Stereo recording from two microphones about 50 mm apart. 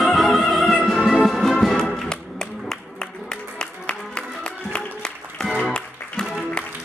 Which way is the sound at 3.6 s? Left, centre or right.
Centre.